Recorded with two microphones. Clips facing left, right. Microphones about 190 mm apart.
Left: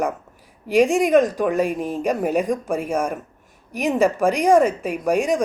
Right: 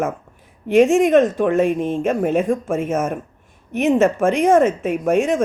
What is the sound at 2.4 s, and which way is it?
Speech, 15° left (ahead or behind).